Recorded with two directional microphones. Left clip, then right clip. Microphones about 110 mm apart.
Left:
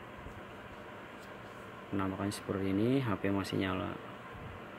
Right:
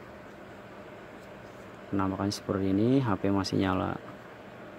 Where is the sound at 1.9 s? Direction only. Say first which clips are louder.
Right 6 dB; 25° right (ahead or behind); by 3.9 s 40° right (ahead or behind).